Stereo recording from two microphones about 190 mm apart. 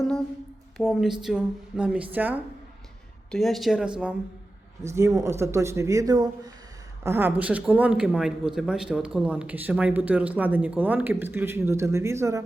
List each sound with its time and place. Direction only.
0.8 s speech: centre (ahead or behind)
4.9 s speech: 15° right (ahead or behind)